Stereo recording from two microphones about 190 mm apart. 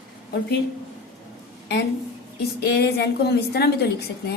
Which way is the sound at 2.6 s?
60° left (ahead or behind).